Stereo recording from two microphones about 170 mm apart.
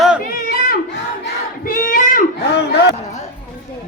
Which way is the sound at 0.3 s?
60° left (ahead or behind).